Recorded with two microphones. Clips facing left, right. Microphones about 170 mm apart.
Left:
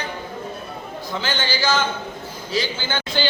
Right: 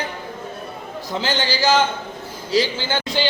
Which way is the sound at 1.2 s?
35° right (ahead or behind).